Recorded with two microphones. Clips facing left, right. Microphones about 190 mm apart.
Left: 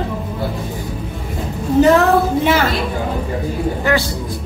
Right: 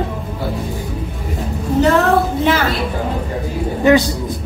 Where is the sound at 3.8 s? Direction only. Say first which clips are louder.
Right 8 dB; 20° right (ahead or behind).